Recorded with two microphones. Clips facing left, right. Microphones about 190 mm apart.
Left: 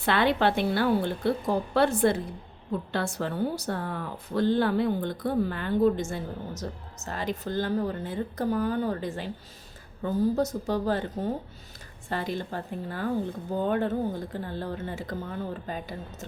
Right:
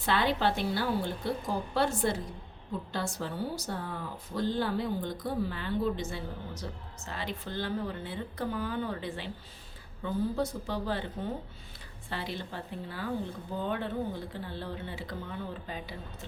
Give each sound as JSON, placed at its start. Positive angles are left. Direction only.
{"t": 0.0, "sound": "a woman's voice", "side_deg": 65}